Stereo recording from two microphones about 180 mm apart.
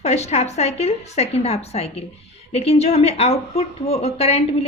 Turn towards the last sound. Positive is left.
turn(degrees=35)  # may be behind; listen again after turning